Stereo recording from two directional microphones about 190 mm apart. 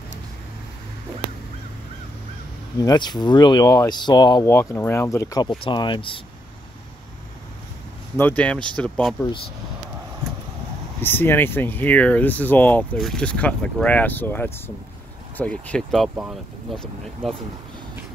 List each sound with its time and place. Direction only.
2.8 s speech: 20° left (ahead or behind)
8.2 s speech: 10° left (ahead or behind)
11.0 s speech: 10° left (ahead or behind)